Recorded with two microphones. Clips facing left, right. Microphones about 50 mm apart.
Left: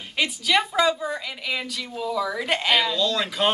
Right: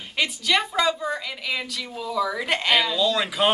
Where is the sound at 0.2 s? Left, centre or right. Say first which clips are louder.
Left 1 dB; centre.